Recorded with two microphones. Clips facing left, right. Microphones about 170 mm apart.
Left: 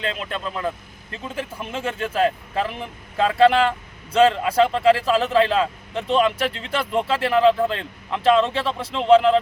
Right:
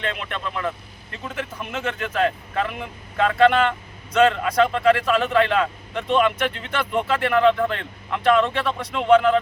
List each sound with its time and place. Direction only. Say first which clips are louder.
0.0 s speech: left 1 dB; 30° left (ahead or behind)